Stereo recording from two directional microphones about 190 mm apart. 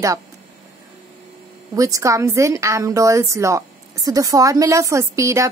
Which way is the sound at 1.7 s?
15° right (ahead or behind).